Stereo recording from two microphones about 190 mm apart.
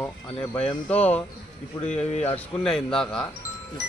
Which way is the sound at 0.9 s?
10° left (ahead or behind).